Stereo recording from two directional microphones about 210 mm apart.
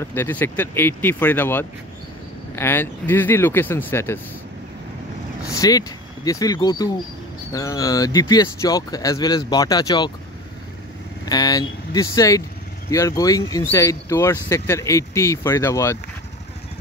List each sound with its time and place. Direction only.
0.0 s speech: 10° left (ahead or behind)
5.5 s speech: 15° left (ahead or behind)
11.2 s speech: 20° left (ahead or behind)